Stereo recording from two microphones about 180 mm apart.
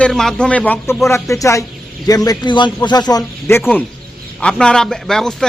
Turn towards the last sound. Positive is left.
turn(degrees=5)  # may be behind; listen again after turning